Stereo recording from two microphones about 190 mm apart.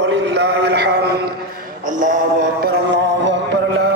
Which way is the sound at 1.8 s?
45° right (ahead or behind).